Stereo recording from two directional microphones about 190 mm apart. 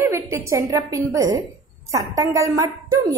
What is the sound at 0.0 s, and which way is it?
A woman's voice, 15° right (ahead or behind).